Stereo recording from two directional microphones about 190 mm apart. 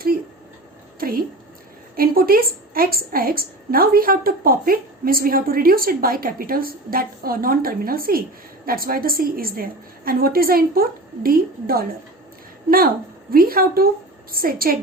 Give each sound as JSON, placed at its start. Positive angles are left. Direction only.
{"t": 0.9, "sound": "a sound", "side_deg": -50}
{"t": 2.0, "sound": "a woman's voice", "side_deg": -50}
{"t": 13.3, "sound": "a woman's voice", "side_deg": -50}